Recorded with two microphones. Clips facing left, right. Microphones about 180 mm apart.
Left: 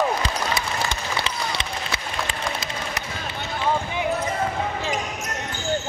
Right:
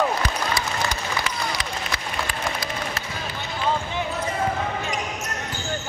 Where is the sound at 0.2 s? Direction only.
25° left (ahead or behind).